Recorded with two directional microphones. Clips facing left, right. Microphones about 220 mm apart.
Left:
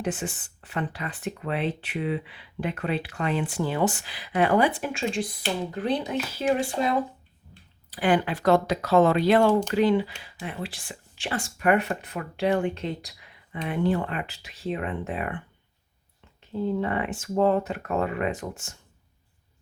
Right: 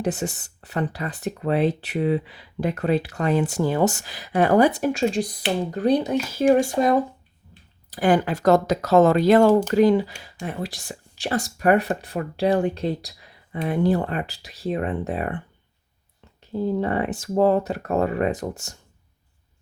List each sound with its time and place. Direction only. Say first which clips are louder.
0.0 s speech: right 4 dB; 40° right (ahead or behind)
16.5 s speech: right 3 dB; 40° right (ahead or behind)